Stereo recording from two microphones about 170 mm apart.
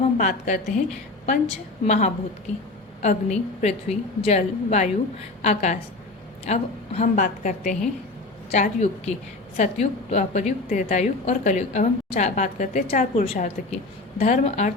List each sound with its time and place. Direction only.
0.2 s a woman's voice: 45° left (ahead or behind)